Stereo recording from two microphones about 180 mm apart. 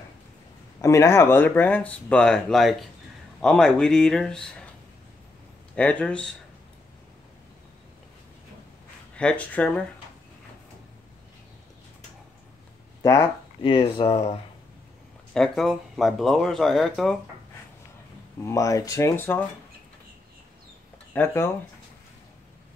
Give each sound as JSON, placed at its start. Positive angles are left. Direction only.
{"t": 0.7, "sound": "speech", "side_deg": 15}
{"t": 5.8, "sound": "speech", "side_deg": 5}
{"t": 9.1, "sound": "speech", "side_deg": 5}
{"t": 13.0, "sound": "speech", "side_deg": 15}
{"t": 13.7, "sound": "speech", "side_deg": 30}
{"t": 15.3, "sound": "speech", "side_deg": 0}
{"t": 18.4, "sound": "speech", "side_deg": 15}
{"t": 21.1, "sound": "speech", "side_deg": 10}